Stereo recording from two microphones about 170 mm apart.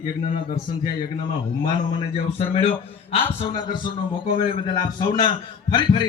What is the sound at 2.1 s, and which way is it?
A man's voice, 35° left (ahead or behind).